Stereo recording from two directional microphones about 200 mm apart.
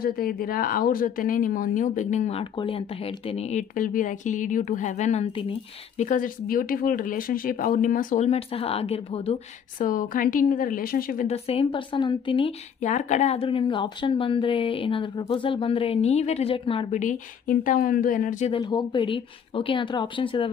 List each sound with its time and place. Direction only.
0.0 s speech: 45° left (ahead or behind); by 6.0 s 30° left (ahead or behind)
6.0 s speech: 45° left (ahead or behind)
11.2 s speech: 30° left (ahead or behind)
18.6 s speech: 20° left (ahead or behind)